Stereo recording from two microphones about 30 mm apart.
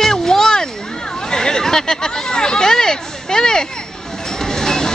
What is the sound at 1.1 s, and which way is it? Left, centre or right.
Speech, left.